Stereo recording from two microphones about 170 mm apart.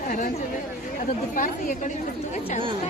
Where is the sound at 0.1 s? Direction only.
55° left (ahead or behind).